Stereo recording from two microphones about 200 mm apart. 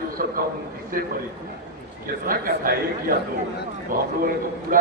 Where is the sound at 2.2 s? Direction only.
45° right (ahead or behind).